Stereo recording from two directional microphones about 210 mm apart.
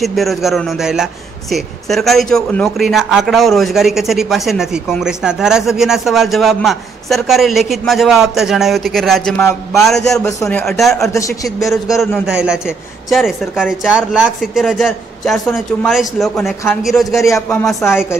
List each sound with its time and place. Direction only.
0.0 s a man's voice: centre (ahead or behind)
10.6 s a man's voice: centre (ahead or behind)
17.2 s speech: 10° left (ahead or behind)